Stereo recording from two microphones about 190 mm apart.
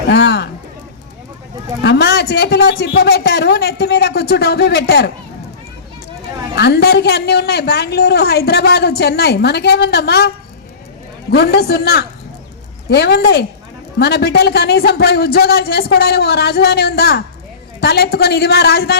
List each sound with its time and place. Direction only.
0.1 s a woman's voice: 65° left (ahead or behind)
1.8 s a woman's voice: 65° left (ahead or behind)
6.6 s a woman's voice: 60° left (ahead or behind)